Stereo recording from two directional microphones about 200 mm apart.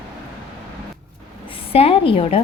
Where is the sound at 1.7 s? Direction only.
30° left (ahead or behind).